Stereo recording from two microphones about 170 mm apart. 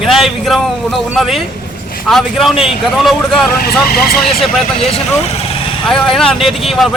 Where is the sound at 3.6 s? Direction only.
65° left (ahead or behind).